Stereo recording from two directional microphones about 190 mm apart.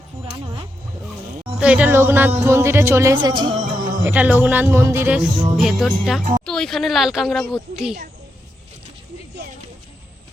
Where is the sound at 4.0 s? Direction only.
10° right (ahead or behind).